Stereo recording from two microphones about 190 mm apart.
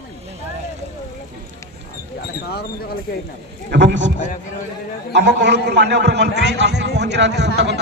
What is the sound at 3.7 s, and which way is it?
Speech, 70° right (ahead or behind).